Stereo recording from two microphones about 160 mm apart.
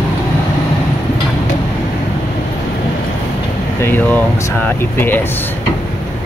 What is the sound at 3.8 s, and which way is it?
Speech, 10° left (ahead or behind).